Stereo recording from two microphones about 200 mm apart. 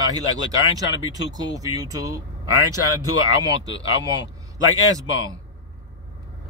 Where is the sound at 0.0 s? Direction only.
20° right (ahead or behind).